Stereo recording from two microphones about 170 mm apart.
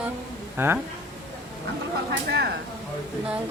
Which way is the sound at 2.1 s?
80° right.